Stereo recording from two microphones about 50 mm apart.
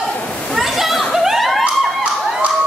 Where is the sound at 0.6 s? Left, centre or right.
Centre.